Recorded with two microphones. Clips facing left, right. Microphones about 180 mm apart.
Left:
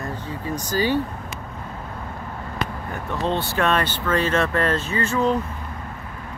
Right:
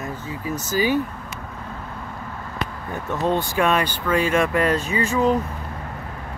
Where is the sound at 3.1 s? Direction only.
15° right (ahead or behind).